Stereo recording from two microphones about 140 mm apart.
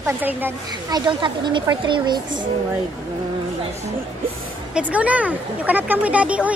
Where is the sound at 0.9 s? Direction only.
30° right (ahead or behind).